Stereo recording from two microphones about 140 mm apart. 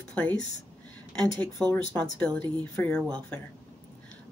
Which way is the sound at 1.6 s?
10° left (ahead or behind).